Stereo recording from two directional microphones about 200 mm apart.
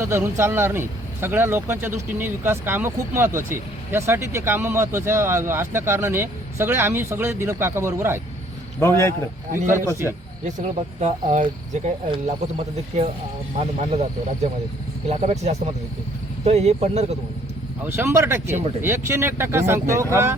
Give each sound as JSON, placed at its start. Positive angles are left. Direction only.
{"t": 0.0, "sound": "speech", "side_deg": -15}
{"t": 8.8, "sound": "a man's voice", "side_deg": 15}
{"t": 9.5, "sound": "speech", "side_deg": -40}
{"t": 15.0, "sound": "speech", "side_deg": -35}
{"t": 17.8, "sound": "speech", "side_deg": -10}